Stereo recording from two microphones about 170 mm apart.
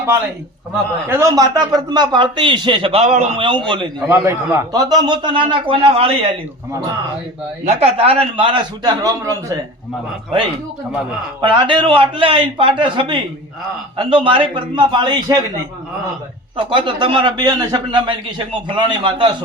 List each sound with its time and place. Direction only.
1.0 s a man's voice: 15° right (ahead or behind); by 6.3 s 35° right (ahead or behind)
7.6 s a man's voice: 35° right (ahead or behind); by 9.6 s 20° right (ahead or behind)
11.3 s a man's voice: 30° right (ahead or behind)
16.6 s a man's voice: 30° right (ahead or behind)